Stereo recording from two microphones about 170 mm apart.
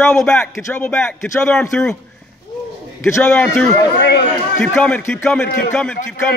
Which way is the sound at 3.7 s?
70° left (ahead or behind).